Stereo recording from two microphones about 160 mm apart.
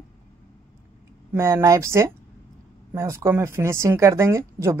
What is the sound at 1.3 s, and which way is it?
A woman's voice, 15° right (ahead or behind).